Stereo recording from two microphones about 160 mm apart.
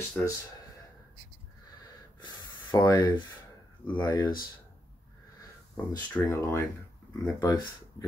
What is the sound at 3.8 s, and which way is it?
Speech, 25° left (ahead or behind).